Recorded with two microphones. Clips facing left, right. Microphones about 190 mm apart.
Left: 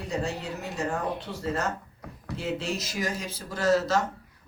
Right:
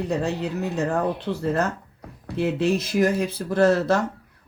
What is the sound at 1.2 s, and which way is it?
Speech, 60° right (ahead or behind).